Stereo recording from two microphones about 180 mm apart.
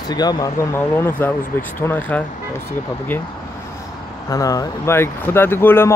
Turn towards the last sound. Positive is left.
turn(degrees=10)  # may be behind; listen again after turning